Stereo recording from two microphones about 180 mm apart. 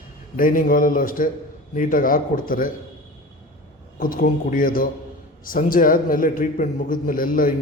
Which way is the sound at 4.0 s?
50° left (ahead or behind).